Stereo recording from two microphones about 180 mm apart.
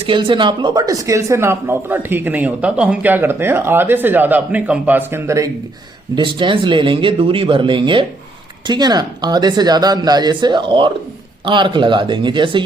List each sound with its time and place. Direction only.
0.0 s speech: 30° right (ahead or behind)
6.1 s speech: 25° right (ahead or behind)